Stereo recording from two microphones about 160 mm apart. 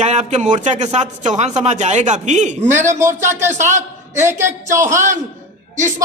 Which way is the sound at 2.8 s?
15° right (ahead or behind).